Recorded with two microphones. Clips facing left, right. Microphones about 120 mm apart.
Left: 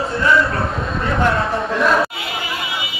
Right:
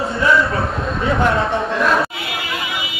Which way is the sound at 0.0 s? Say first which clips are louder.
Even; centre (ahead or behind).